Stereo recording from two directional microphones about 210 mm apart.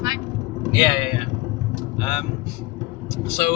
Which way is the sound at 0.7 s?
20° left (ahead or behind).